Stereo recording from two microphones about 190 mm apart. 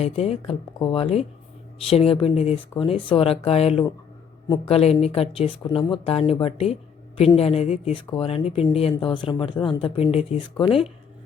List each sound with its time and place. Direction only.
0.0 s speech: 35° left (ahead or behind)